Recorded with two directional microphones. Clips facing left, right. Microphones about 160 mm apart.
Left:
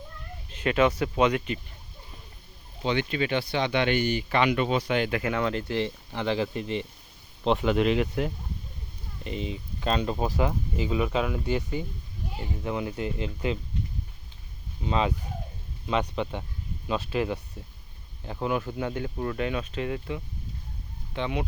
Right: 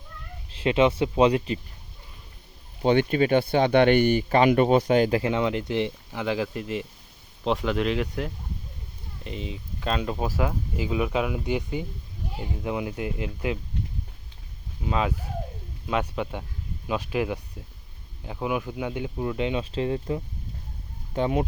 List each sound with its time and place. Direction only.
0.5 s speech: 25° right (ahead or behind)
2.8 s speech: 45° right (ahead or behind)
5.3 s speech: 20° right (ahead or behind)
6.1 s speech: 5° right (ahead or behind)
14.8 s speech: 5° right (ahead or behind); by 21.4 s 40° right (ahead or behind)